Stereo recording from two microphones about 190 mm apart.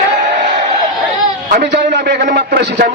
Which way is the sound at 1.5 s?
65° right (ahead or behind).